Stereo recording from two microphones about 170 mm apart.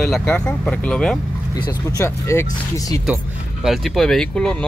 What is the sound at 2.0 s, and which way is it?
Speech, 15° left (ahead or behind).